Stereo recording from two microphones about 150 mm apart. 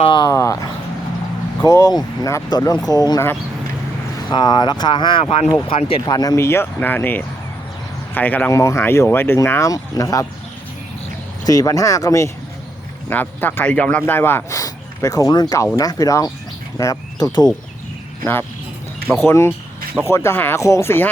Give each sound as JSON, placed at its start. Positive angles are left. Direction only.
{"t": 0.0, "sound": "speech", "side_deg": 35}
{"t": 0.3, "sound": "a sound", "side_deg": 20}
{"t": 1.6, "sound": "speech", "side_deg": 25}
{"t": 4.3, "sound": "speech", "side_deg": 30}
{"t": 11.4, "sound": "speech", "side_deg": 25}
{"t": 16.7, "sound": "bird", "side_deg": 25}
{"t": 19.1, "sound": "speech", "side_deg": 15}
{"t": 19.5, "sound": "a sound", "side_deg": -5}
{"t": 20.1, "sound": "speech", "side_deg": 15}